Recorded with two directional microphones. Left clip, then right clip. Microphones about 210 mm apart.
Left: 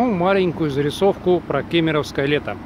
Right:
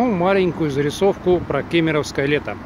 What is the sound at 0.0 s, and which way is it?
Speech, centre (ahead or behind).